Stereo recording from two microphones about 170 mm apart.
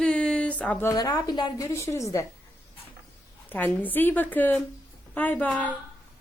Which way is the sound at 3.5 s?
10° left (ahead or behind).